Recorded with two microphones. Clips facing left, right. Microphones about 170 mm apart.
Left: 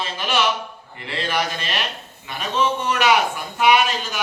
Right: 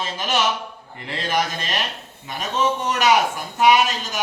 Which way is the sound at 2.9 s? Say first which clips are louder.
Right 1 dB; 40° right (ahead or behind).